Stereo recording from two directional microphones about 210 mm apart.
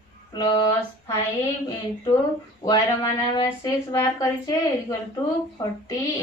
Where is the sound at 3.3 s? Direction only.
15° left (ahead or behind).